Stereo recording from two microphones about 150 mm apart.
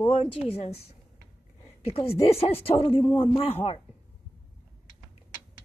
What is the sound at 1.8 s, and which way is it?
Speech, 40° left (ahead or behind).